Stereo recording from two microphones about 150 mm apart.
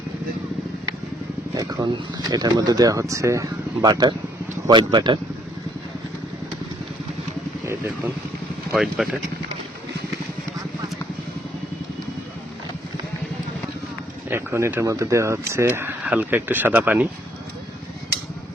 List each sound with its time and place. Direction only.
1.5 s speech: 25° right (ahead or behind)
7.6 s a sound: 20° right (ahead or behind)
8.7 s speech: centre (ahead or behind)
14.3 s speech: 15° right (ahead or behind)